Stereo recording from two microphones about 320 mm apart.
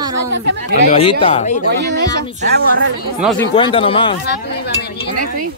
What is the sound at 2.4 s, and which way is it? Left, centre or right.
Speech, right.